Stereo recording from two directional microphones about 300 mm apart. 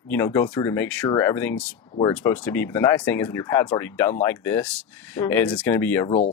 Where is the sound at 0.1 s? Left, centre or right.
Centre.